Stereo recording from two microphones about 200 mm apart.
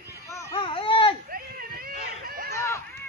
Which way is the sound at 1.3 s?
45° right (ahead or behind).